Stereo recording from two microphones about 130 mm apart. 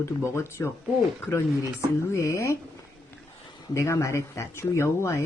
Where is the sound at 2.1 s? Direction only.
25° left (ahead or behind).